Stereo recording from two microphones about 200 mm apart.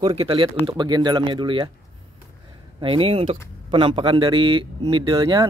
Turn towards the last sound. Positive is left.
turn(degrees=-25)  # may be behind; listen again after turning